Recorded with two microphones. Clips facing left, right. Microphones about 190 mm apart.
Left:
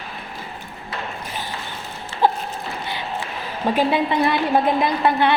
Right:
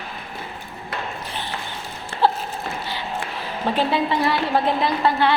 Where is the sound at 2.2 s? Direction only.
15° left (ahead or behind).